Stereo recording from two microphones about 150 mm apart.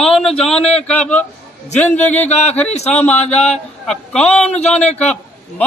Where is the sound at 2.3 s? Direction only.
50° left (ahead or behind).